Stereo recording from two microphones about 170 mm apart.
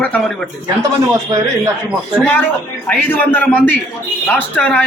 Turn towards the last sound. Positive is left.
turn(degrees=10)  # may be behind; listen again after turning